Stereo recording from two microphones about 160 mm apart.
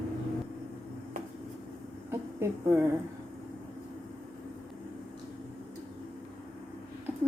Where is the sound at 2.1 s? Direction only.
15° right (ahead or behind).